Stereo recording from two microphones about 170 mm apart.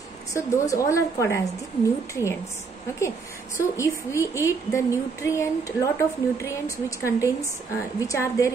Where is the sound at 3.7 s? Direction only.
15° left (ahead or behind).